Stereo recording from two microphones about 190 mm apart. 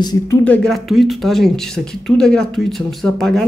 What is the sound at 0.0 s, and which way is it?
Speech, 20° left (ahead or behind).